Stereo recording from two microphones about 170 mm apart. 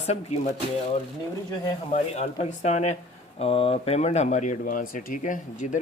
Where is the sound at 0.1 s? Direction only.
40° left (ahead or behind).